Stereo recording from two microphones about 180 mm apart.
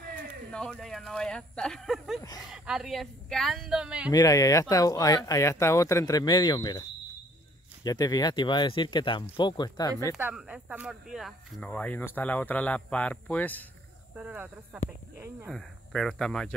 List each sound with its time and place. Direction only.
0.1 s speech: 5° left (ahead or behind)
4.1 s speech: 20° left (ahead or behind)
7.8 s speech: 20° left (ahead or behind)
10.1 s speech: 5° right (ahead or behind); by 13.7 s 10° left (ahead or behind)
14.1 s speech: 10° right (ahead or behind)